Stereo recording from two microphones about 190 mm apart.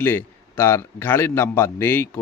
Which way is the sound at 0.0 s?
15° left (ahead or behind).